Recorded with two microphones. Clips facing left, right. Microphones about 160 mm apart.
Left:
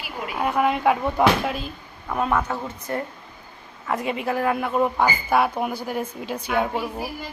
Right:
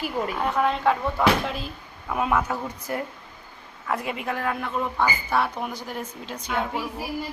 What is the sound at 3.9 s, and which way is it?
A woman's voice, centre (ahead or behind).